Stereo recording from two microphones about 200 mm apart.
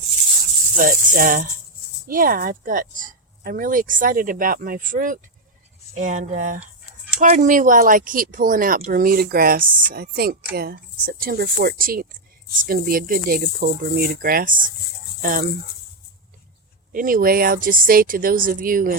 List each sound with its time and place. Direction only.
0.8 s speech: 45° right (ahead or behind)
16.9 s speech: 45° right (ahead or behind)